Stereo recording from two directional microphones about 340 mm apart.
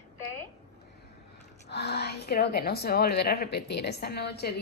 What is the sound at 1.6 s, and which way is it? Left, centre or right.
A woman's voice, left.